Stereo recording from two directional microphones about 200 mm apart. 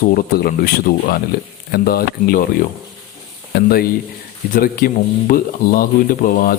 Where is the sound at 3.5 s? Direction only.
50° left (ahead or behind).